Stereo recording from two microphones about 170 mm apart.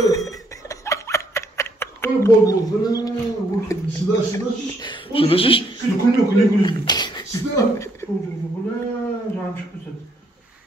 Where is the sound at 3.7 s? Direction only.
20° left (ahead or behind).